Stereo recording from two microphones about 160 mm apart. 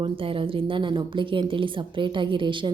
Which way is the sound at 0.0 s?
35° right (ahead or behind).